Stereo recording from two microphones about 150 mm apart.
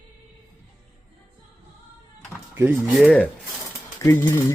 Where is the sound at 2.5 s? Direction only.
15° right (ahead or behind).